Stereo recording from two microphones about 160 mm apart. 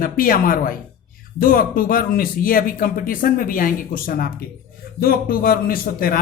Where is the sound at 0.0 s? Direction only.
65° left (ahead or behind).